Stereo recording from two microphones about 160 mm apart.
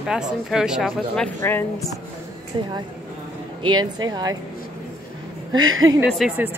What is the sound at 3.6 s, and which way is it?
Speech, 25° right (ahead or behind).